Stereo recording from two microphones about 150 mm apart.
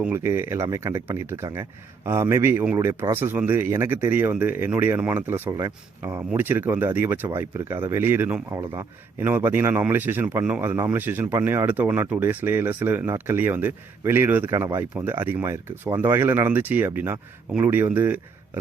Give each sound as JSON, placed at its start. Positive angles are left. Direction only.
{"t": 0.1, "sound": "speech", "side_deg": -15}
{"t": 5.5, "sound": "speech", "side_deg": -25}
{"t": 6.1, "sound": "speech", "side_deg": -15}